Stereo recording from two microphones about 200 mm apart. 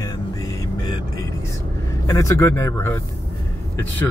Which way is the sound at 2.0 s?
15° left (ahead or behind).